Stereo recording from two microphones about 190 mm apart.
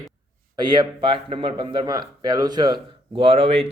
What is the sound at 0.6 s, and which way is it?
Speech, 25° right (ahead or behind).